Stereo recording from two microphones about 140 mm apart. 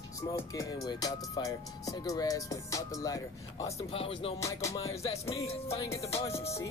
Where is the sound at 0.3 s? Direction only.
25° left (ahead or behind).